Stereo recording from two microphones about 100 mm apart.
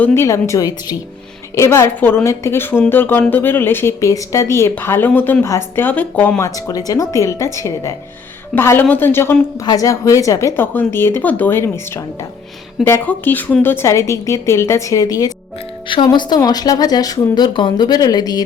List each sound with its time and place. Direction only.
0.1 s a woman's voice: 30° left (ahead or behind)
6.4 s a woman's voice: 35° left (ahead or behind)
9.6 s a woman's voice: 35° left (ahead or behind)